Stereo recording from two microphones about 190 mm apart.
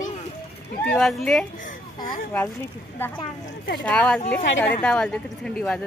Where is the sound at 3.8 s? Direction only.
5° left (ahead or behind).